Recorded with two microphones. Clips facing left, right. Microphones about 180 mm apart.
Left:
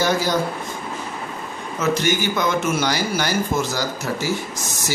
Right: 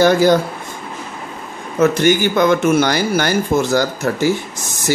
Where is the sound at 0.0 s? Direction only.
55° right (ahead or behind).